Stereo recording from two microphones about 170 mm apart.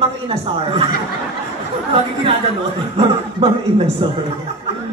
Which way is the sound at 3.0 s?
35° right (ahead or behind).